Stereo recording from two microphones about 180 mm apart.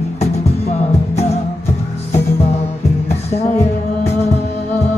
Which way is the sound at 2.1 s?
35° left (ahead or behind).